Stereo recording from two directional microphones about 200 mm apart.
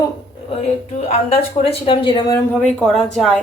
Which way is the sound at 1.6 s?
30° left (ahead or behind).